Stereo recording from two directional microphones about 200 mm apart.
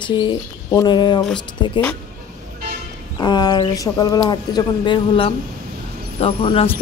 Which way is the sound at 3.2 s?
20° left (ahead or behind).